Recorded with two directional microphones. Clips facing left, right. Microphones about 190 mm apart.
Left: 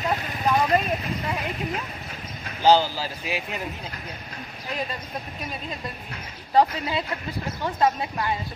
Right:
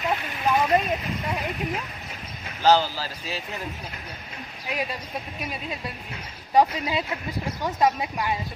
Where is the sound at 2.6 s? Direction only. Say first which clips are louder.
Left 1 dB; 15° left (ahead or behind).